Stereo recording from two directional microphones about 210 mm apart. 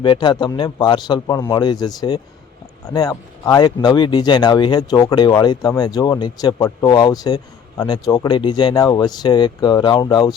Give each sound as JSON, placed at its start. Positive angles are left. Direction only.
{"t": 0.0, "sound": "speech", "side_deg": 20}